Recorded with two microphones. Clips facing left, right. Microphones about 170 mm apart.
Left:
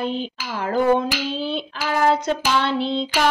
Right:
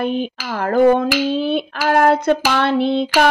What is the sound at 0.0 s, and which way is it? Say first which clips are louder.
Speech: right 5 dB; 55° right (ahead or behind).